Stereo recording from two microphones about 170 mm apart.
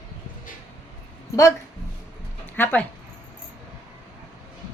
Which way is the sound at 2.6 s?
10° left (ahead or behind).